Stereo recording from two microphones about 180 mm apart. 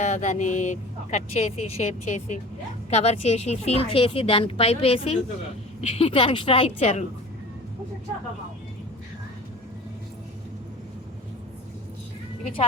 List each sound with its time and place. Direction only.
0.0 s a woman's voice: 40° left (ahead or behind)